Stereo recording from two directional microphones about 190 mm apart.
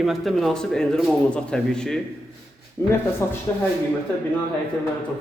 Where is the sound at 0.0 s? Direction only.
Centre (ahead or behind).